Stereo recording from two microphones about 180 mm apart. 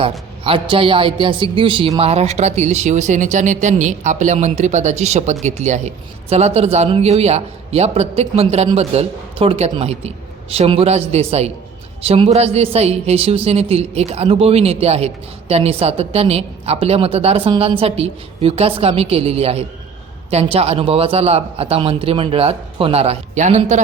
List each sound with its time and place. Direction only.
0.0 s a man's voice: 30° right (ahead or behind)